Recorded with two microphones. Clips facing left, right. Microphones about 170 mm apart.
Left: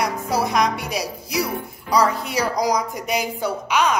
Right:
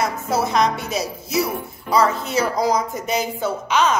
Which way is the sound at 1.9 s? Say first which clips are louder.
Right 1 dB; 15° left (ahead or behind).